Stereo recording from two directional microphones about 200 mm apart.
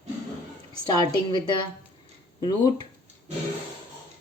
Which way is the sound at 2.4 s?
20° left (ahead or behind).